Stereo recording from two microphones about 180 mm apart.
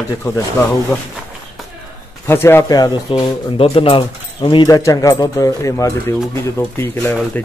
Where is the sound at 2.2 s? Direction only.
15° left (ahead or behind).